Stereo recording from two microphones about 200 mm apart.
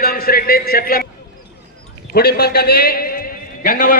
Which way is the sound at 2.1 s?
50° left (ahead or behind).